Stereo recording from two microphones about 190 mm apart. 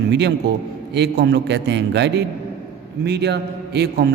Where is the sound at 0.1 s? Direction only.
65° right (ahead or behind).